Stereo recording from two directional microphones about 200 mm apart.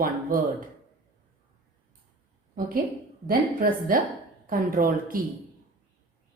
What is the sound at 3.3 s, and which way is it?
A woman's voice, 45° right (ahead or behind).